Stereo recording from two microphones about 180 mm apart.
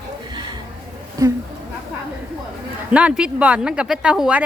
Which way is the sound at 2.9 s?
5° right (ahead or behind).